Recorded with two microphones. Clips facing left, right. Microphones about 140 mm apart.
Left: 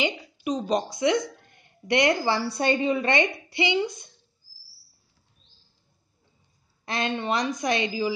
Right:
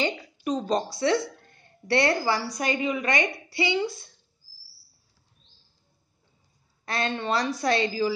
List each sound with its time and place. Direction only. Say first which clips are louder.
0.0 s a woman's voice: even; 10° left (ahead or behind)
6.9 s a woman's voice: even; 20° left (ahead or behind)